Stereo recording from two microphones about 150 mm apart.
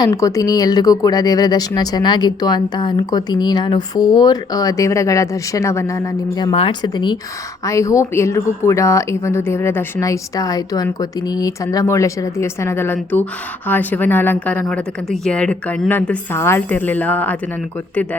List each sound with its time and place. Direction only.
0.0 s speech: 25° left (ahead or behind)
6.5 s speech: 35° left (ahead or behind); by 17.3 s 10° left (ahead or behind)